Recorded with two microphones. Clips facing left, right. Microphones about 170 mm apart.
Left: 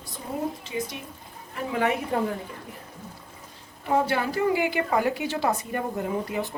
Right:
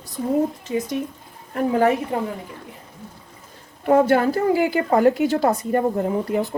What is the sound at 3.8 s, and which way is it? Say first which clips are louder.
A woman's voice: right 8 dB; 55° right (ahead or behind).